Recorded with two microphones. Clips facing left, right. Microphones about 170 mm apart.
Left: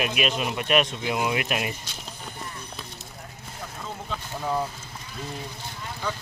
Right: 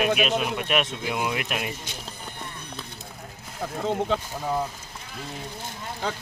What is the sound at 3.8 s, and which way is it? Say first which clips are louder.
Speech: right 11 dB; 70° right (ahead or behind).